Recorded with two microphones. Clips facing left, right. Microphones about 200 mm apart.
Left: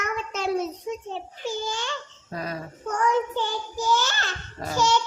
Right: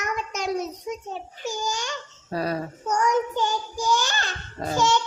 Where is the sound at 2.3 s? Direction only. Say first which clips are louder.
Right 6 dB; 35° right (ahead or behind).